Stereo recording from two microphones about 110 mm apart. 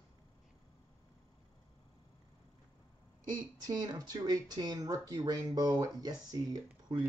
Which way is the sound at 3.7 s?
35° right (ahead or behind).